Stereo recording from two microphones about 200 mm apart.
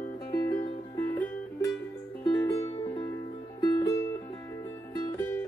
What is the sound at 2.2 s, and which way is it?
Music, 15° left (ahead or behind).